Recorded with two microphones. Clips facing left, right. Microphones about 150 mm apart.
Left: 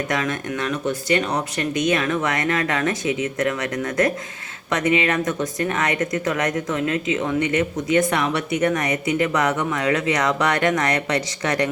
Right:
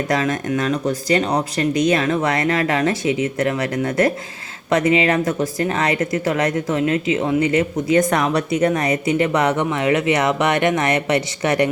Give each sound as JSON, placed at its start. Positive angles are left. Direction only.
{"t": 0.1, "sound": "speech", "side_deg": -35}